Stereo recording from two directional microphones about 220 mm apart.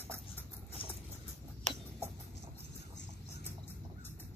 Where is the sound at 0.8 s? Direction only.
25° left (ahead or behind).